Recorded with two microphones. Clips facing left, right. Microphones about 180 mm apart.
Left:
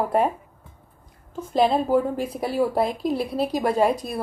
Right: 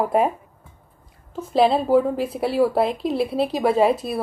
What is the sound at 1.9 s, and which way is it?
Speech, 5° right (ahead or behind).